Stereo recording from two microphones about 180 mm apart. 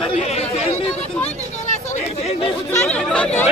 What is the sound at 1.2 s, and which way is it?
Chatter, 40° left (ahead or behind).